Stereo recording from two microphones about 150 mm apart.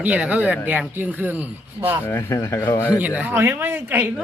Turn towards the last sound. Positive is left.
turn(degrees=-10)  # may be behind; listen again after turning